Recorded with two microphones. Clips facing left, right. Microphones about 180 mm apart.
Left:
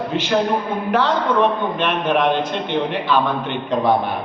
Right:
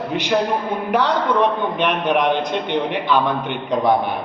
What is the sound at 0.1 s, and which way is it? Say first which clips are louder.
A man's voice: left 1 dB; 15° right (ahead or behind).